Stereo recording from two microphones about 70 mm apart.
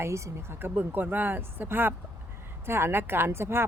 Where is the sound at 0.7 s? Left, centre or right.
Right.